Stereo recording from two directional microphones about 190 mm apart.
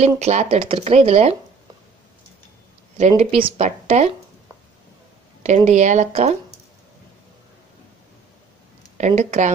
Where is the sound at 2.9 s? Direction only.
35° right (ahead or behind).